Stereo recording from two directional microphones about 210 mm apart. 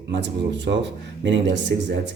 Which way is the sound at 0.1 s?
55° right (ahead or behind).